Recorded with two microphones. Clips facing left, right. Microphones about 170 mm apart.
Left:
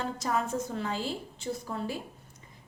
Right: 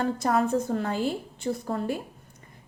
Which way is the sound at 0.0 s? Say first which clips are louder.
Right 6 dB; 55° right (ahead or behind).